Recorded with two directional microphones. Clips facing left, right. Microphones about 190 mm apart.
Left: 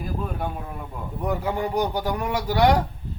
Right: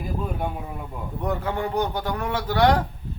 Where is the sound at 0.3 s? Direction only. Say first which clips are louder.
Right 1 dB; 5° right (ahead or behind).